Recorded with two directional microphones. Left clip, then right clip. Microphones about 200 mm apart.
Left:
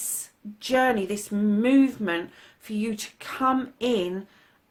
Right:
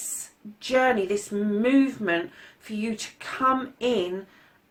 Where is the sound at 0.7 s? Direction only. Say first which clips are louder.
Right 1 dB; 50° left (ahead or behind).